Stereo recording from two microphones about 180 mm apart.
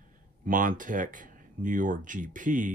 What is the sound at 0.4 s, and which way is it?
Speech, 50° right (ahead or behind).